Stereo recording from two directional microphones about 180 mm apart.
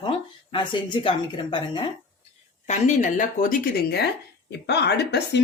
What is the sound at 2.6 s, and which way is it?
Speech, 40° left (ahead or behind).